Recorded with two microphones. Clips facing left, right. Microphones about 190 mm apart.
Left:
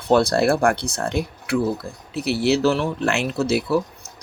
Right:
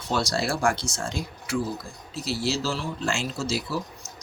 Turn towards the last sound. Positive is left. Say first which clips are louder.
# left 10 dB
turn(degrees=60)  # may be behind; listen again after turning